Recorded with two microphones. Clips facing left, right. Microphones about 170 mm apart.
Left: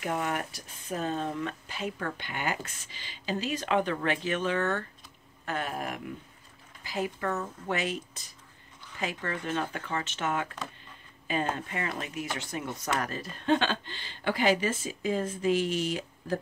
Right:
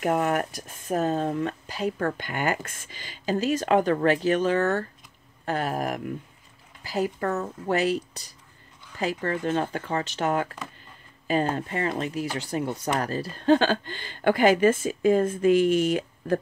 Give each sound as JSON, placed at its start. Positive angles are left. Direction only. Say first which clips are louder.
{"t": 0.0, "sound": "speech", "louder": "right 7 dB", "side_deg": -50}